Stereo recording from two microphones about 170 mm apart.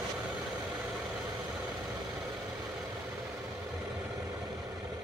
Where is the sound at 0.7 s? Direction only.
5° right (ahead or behind).